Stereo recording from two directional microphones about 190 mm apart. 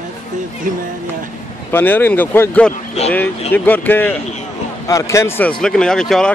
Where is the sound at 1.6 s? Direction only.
10° left (ahead or behind).